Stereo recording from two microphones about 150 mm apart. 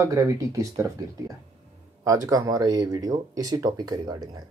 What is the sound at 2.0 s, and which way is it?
Speech, 20° right (ahead or behind).